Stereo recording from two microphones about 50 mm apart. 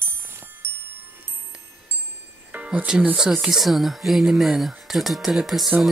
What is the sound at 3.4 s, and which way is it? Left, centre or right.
Speech, centre.